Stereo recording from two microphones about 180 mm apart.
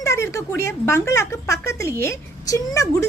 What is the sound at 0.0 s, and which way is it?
A woman's voice, 15° left (ahead or behind).